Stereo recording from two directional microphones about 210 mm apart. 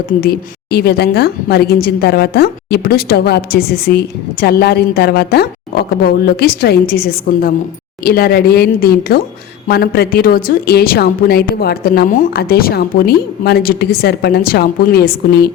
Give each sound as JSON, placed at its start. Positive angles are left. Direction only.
{"t": 0.2, "sound": "a woman's voice", "side_deg": 50}